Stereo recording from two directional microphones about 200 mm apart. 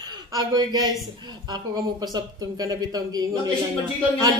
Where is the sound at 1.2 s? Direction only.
20° right (ahead or behind).